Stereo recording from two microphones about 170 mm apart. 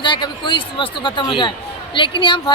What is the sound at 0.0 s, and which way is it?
Speech, 25° left (ahead or behind).